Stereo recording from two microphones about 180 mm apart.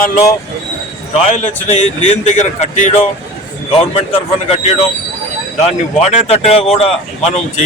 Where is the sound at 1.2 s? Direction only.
35° left (ahead or behind).